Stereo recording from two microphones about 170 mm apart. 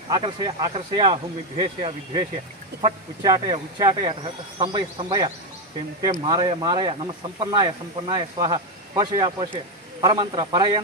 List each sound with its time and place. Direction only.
0.1 s speech: 30° right (ahead or behind)